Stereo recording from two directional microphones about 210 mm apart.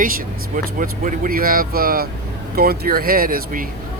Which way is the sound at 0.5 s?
40° right (ahead or behind).